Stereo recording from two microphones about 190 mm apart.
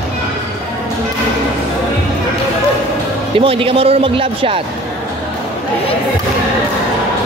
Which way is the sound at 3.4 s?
30° right (ahead or behind).